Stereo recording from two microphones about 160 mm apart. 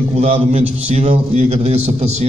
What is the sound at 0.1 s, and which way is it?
A man's voice, 40° right (ahead or behind).